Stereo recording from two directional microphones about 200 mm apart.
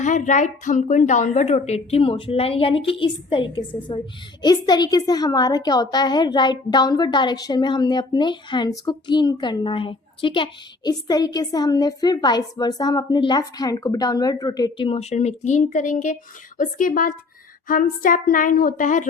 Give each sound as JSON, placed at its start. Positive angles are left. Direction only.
{"t": 0.0, "sound": "a woman's voice", "side_deg": 35}